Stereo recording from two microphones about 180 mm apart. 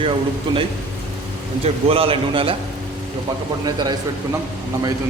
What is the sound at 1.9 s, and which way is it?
Speech, 30° right (ahead or behind).